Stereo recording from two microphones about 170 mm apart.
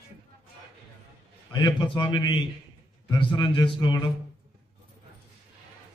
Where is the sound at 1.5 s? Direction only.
25° left (ahead or behind).